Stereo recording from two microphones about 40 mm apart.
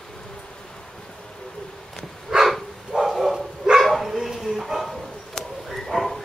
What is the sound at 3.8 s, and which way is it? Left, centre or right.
Dog, centre.